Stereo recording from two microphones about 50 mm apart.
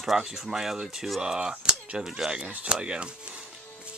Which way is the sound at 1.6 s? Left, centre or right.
Centre.